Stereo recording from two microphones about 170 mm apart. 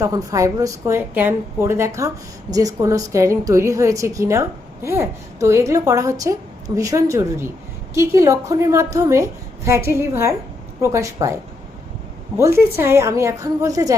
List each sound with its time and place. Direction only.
0.0 s a woman's voice: 20° right (ahead or behind)
12.4 s a woman's voice: 15° right (ahead or behind)